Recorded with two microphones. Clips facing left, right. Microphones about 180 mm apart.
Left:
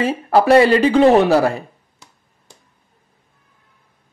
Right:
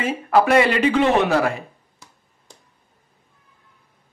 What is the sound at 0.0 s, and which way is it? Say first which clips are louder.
Speech: left 3 dB; 35° left (ahead or behind).